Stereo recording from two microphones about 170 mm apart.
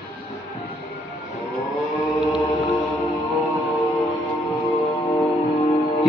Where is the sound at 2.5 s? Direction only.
25° left (ahead or behind).